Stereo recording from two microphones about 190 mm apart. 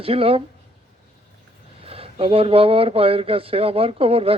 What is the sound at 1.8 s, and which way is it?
Speech, 30° right (ahead or behind).